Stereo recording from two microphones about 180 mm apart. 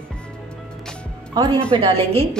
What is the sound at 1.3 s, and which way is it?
Speech, 25° right (ahead or behind).